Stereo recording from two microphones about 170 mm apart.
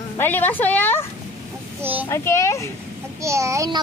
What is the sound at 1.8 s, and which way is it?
Speech, 10° right (ahead or behind).